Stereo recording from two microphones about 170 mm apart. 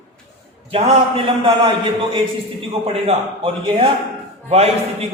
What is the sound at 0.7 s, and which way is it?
A man's voice, 35° right (ahead or behind).